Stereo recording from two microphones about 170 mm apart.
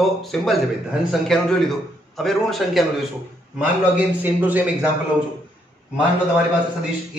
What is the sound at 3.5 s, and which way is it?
A man's voice, 10° right (ahead or behind).